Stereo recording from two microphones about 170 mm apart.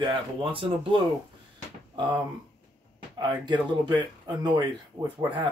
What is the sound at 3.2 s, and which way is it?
Speech, 25° right (ahead or behind).